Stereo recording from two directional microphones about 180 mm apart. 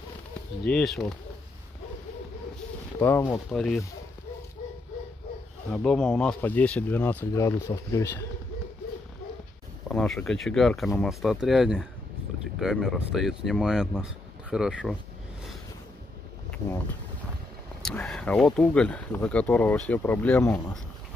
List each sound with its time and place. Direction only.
0.7 s speech: 5° left (ahead or behind)
3.0 s speech: 15° left (ahead or behind)
3.5 s speech: centre (ahead or behind)
5.7 s speech: centre (ahead or behind)
9.8 s speech: centre (ahead or behind)
18.0 s speech: 5° left (ahead or behind)